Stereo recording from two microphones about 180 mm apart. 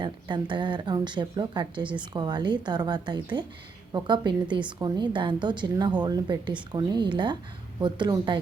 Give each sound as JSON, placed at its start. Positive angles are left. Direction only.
{"t": 0.0, "sound": "speech", "side_deg": -25}